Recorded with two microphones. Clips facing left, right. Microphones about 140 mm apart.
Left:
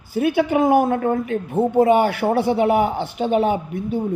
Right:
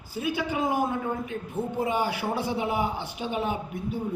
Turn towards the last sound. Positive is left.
turn(degrees=70)  # may be behind; listen again after turning